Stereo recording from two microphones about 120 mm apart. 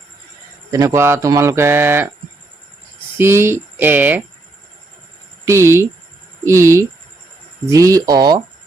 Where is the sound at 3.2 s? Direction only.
20° right (ahead or behind).